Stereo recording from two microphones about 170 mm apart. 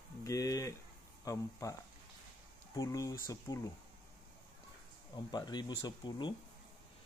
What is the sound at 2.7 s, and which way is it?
Speech, 20° left (ahead or behind).